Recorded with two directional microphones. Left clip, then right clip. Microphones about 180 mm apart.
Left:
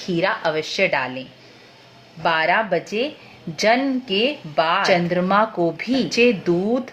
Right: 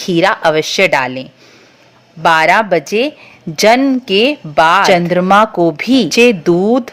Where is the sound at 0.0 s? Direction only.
45° right (ahead or behind).